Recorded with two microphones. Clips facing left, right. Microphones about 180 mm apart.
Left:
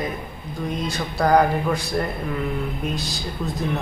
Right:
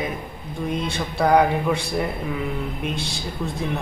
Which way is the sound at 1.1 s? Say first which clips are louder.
Even; centre (ahead or behind).